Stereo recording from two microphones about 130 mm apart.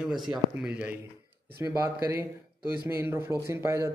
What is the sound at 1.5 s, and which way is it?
Speech, 20° right (ahead or behind).